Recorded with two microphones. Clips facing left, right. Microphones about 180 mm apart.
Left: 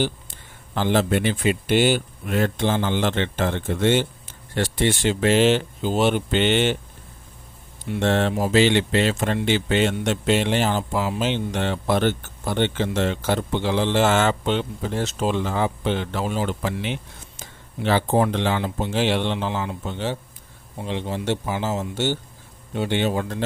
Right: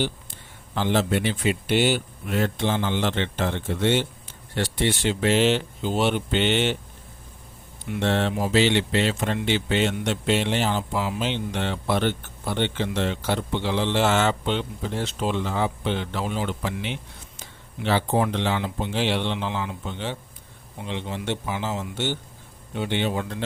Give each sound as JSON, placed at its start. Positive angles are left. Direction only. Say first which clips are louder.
{"t": 0.8, "sound": "speech", "louder": "left 2 dB", "side_deg": 45}
{"t": 8.0, "sound": "speech", "louder": "left 3 dB", "side_deg": 50}